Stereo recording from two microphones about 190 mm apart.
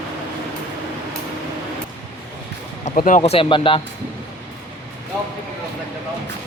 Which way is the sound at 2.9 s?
40° left (ahead or behind).